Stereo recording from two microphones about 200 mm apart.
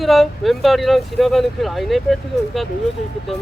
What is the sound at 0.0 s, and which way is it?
Speech, centre (ahead or behind).